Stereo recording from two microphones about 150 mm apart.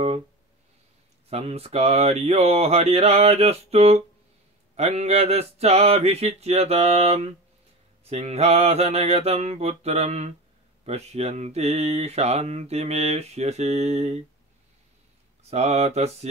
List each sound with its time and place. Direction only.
1.3 s speech: 45° right (ahead or behind)
15.5 s speech: 45° right (ahead or behind)